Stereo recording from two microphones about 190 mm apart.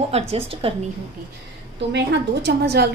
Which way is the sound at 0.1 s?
30° right (ahead or behind).